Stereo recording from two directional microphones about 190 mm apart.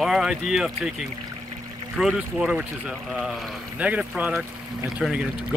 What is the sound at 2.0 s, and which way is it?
Speech, centre (ahead or behind).